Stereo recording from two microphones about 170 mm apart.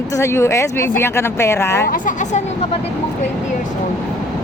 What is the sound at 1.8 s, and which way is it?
Speech, 50° left (ahead or behind).